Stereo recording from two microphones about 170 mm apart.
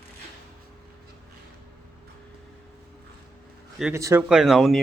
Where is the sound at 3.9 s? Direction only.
15° right (ahead or behind).